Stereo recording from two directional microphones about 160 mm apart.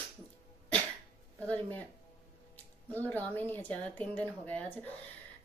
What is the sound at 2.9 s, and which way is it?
Speech, 10° left (ahead or behind).